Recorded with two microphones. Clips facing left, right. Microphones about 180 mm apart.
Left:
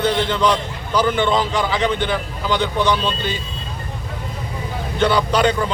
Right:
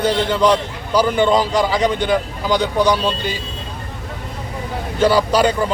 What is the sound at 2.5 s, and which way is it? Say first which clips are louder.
Speech: right 3 dB; 35° right (ahead or behind).